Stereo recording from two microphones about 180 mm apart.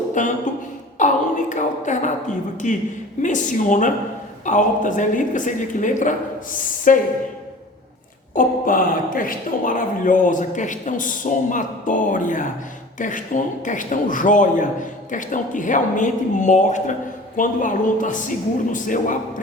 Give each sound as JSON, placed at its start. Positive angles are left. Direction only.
{"t": 0.2, "sound": "speech", "side_deg": 45}
{"t": 8.4, "sound": "speech", "side_deg": 50}